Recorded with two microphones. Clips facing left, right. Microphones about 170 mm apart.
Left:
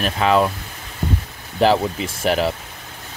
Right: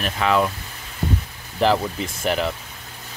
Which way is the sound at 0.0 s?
30° left (ahead or behind).